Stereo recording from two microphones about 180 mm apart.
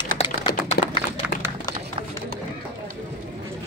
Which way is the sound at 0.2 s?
35° left (ahead or behind).